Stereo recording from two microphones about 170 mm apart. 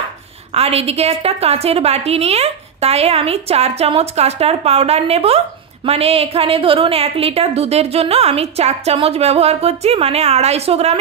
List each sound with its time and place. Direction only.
0.6 s a woman's voice: 35° right (ahead or behind)